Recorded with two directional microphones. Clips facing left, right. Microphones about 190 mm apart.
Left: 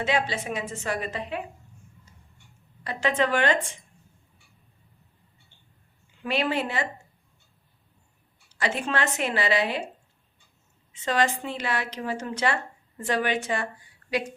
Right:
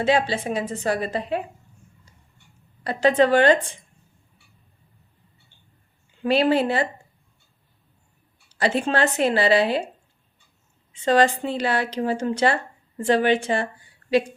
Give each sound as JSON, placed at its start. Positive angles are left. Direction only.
{"t": 0.0, "sound": "speech", "side_deg": -30}
{"t": 2.8, "sound": "speech", "side_deg": -35}
{"t": 6.2, "sound": "speech", "side_deg": -35}
{"t": 8.5, "sound": "speech", "side_deg": -30}
{"t": 11.0, "sound": "a woman's voice", "side_deg": -35}